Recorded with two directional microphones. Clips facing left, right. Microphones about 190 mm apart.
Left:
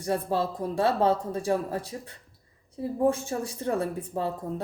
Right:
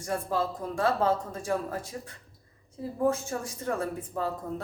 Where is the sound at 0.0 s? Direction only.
30° left (ahead or behind).